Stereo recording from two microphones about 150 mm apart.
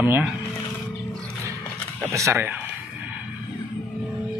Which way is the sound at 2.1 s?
20° right (ahead or behind).